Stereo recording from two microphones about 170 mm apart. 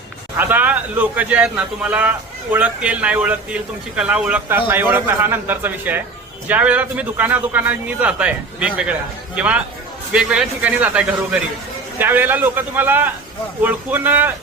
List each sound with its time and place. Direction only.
0.3 s a man's voice: 10° right (ahead or behind)